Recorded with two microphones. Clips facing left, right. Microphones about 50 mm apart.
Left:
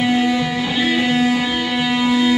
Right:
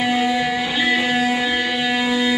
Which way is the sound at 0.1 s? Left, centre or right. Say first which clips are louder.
Left 1 dB; centre.